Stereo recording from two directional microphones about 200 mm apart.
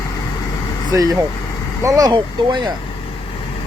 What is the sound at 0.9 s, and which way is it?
Speech, 15° right (ahead or behind).